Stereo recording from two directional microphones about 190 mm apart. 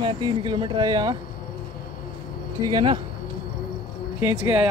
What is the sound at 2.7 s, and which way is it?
Speech, 25° right (ahead or behind).